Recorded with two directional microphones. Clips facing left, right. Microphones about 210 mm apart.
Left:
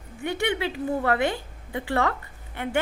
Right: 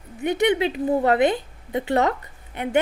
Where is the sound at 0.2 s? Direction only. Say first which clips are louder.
Right 6 dB; 20° right (ahead or behind).